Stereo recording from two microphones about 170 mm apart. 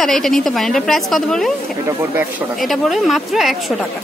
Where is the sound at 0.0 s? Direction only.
Centre (ahead or behind).